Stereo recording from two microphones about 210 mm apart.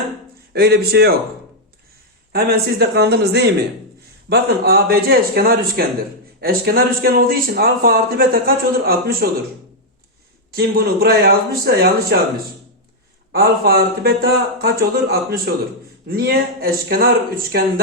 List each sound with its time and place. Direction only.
0.5 s a man's voice: 50° right (ahead or behind)
2.3 s a man's voice: 50° right (ahead or behind)
10.5 s a man's voice: 45° right (ahead or behind)
13.3 s a man's voice: 50° right (ahead or behind)